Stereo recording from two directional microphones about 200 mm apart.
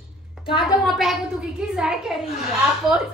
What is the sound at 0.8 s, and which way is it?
A woman's voice, centre (ahead or behind).